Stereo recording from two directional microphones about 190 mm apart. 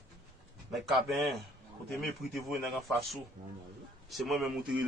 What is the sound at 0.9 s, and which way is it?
Speech, centre (ahead or behind).